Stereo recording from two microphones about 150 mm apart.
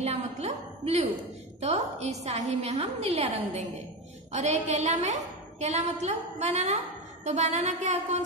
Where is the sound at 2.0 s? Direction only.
45° right (ahead or behind).